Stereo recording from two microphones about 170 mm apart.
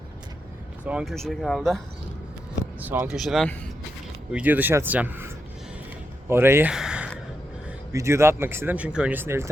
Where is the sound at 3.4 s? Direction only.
10° left (ahead or behind).